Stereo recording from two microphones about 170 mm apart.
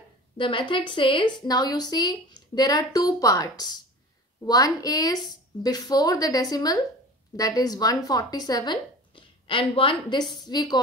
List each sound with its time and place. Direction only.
0.4 s speech: 30° left (ahead or behind)